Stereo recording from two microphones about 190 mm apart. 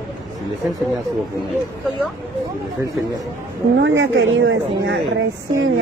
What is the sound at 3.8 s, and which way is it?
A woman's voice, 80° right.